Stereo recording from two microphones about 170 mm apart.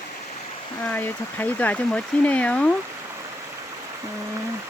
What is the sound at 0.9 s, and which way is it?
Speech, 10° left (ahead or behind).